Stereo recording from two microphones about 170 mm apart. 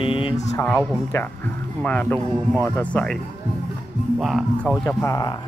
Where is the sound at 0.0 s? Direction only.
30° left (ahead or behind).